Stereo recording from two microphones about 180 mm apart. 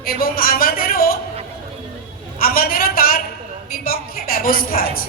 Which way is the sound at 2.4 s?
55° left (ahead or behind).